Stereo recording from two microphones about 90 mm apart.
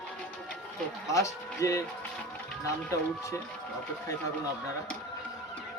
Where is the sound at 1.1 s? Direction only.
35° left (ahead or behind).